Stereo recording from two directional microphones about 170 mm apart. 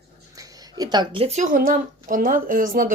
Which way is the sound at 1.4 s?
55° right (ahead or behind).